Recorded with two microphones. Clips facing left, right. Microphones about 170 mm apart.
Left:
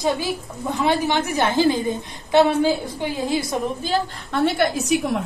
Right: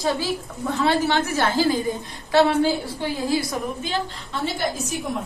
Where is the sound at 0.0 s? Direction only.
15° left (ahead or behind).